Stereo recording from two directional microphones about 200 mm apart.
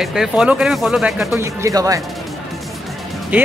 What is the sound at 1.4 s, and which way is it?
Speech, 15° right (ahead or behind).